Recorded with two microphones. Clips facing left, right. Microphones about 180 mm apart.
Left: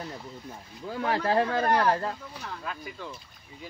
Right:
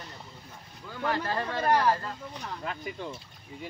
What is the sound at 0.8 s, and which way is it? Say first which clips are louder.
Speech: left 4 dB; 55° left (ahead or behind).